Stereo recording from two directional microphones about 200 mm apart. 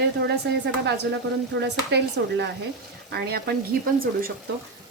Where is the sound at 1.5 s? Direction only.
60° right (ahead or behind).